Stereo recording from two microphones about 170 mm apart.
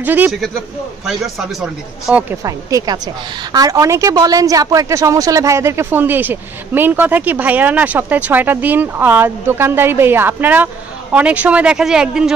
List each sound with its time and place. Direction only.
0.0 s a man's voice: 10° right (ahead or behind)
2.4 s a woman's voice: 20° right (ahead or behind); by 12.4 s 5° right (ahead or behind)